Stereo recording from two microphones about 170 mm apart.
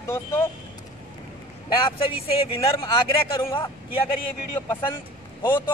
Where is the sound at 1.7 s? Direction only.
30° left (ahead or behind).